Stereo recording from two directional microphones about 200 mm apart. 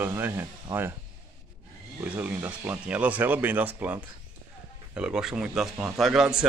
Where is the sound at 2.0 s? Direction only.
10° right (ahead or behind).